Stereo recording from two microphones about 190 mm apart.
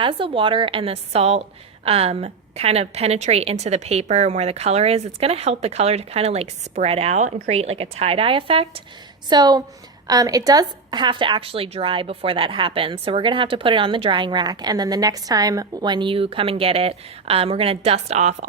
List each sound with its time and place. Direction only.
0.0 s a woman's voice: 25° right (ahead or behind)